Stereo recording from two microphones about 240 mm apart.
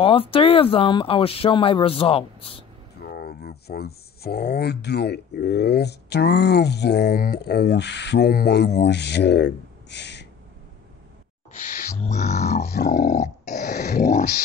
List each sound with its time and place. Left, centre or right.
0.0 s speech: left
3.0 s speech: left
11.5 s owl: left
12.0 s grunt: left